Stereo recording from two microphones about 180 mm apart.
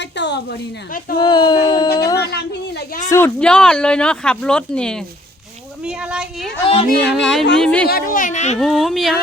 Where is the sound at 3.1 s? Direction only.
10° left (ahead or behind).